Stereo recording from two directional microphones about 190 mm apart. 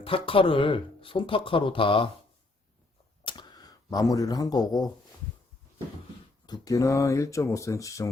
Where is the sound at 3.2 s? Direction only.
25° left (ahead or behind).